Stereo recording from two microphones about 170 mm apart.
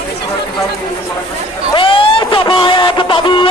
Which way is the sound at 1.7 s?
30° left (ahead or behind).